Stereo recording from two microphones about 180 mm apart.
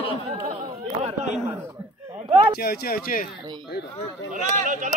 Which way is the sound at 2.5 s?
60° left (ahead or behind).